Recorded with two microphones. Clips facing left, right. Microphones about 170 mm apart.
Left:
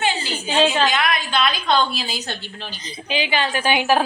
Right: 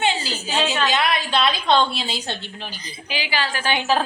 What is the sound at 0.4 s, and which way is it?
Speech, 30° left (ahead or behind).